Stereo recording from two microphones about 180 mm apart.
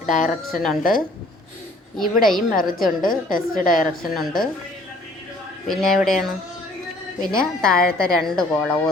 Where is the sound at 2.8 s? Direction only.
50° left (ahead or behind).